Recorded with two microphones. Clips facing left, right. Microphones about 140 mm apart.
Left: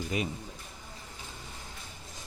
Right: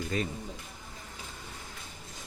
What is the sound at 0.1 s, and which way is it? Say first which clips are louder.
Speech: even; 15° left (ahead or behind).